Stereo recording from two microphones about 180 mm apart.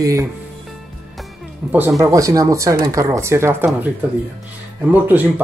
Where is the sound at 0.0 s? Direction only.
15° right (ahead or behind).